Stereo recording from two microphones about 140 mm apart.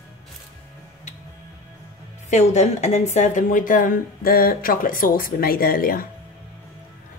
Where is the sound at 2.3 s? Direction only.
55° left (ahead or behind); by 6.1 s 90° left.